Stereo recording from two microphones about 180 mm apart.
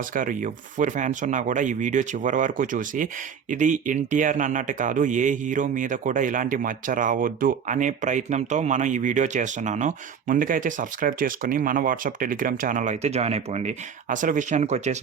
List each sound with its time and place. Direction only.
0.0 s speech: 50° right (ahead or behind)